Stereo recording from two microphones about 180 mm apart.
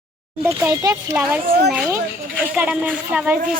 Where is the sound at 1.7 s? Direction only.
5° right (ahead or behind).